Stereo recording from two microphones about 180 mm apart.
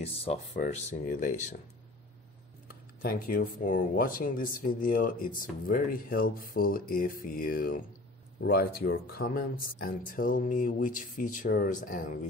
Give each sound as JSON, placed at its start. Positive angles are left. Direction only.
{"t": 0.0, "sound": "speech", "side_deg": 35}
{"t": 0.6, "sound": "speech", "side_deg": 45}
{"t": 2.7, "sound": "speech", "side_deg": 55}